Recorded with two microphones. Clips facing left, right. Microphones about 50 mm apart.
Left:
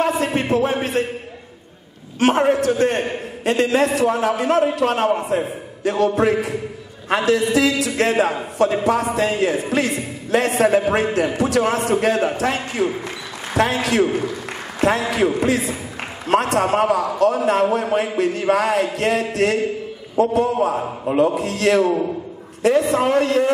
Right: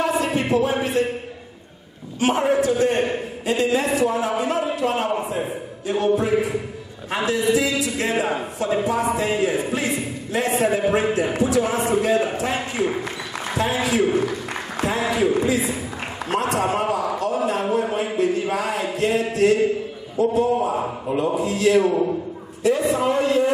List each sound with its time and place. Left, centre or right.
0.0 s a sound: left
1.0 s a man's voice: left
2.1 s a man's voice: left
15.0 s a man's voice: left